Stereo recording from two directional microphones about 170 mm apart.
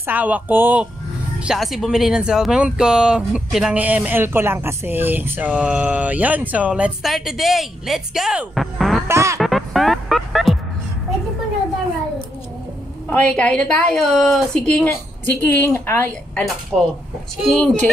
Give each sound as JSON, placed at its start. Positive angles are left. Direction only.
{"t": 0.0, "sound": "speech", "side_deg": -10}
{"t": 9.0, "sound": "speech", "side_deg": -15}
{"t": 9.4, "sound": "music", "side_deg": 0}
{"t": 13.1, "sound": "a woman's voice", "side_deg": 5}